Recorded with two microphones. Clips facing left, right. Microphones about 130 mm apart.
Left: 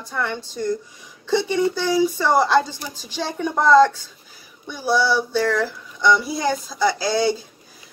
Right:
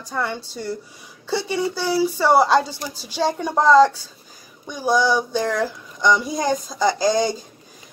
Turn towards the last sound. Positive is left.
turn(degrees=-45)  # may be behind; listen again after turning